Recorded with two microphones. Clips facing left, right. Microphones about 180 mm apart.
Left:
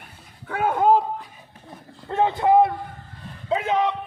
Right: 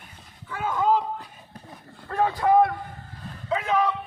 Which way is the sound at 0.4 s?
60° left (ahead or behind).